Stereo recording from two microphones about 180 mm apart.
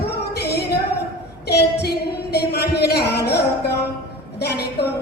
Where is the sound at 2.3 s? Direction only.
65° left (ahead or behind).